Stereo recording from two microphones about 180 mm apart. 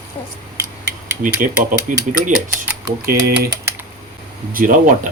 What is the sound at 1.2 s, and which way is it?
Speech, 45° right (ahead or behind).